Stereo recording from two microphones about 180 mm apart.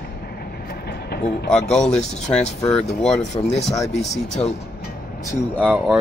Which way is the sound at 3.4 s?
25° left (ahead or behind).